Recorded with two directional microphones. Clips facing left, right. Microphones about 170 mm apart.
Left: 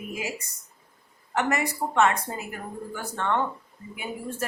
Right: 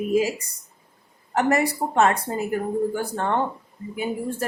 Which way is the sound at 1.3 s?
35° right (ahead or behind).